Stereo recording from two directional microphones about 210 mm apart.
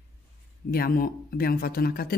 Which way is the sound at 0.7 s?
45° left (ahead or behind).